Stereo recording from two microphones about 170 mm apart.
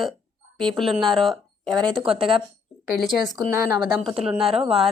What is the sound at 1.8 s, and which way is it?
Speech, 30° right (ahead or behind).